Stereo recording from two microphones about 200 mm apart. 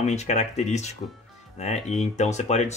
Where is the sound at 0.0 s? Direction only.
35° left (ahead or behind).